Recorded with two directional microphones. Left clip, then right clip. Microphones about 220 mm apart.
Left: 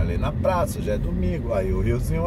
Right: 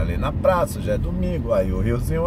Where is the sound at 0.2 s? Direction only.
20° right (ahead or behind).